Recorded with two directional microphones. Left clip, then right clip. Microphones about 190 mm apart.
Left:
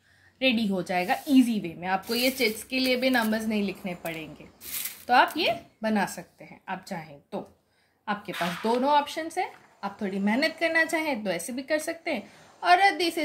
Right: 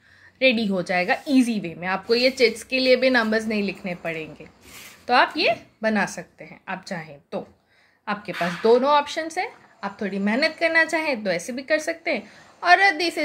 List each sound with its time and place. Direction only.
0.4 s speech: 15° right (ahead or behind)